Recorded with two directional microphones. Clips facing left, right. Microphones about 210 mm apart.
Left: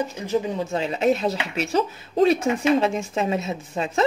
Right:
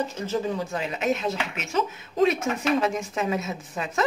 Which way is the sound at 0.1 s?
15° left (ahead or behind).